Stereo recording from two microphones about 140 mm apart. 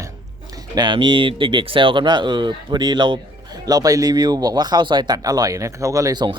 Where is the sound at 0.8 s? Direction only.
35° right (ahead or behind).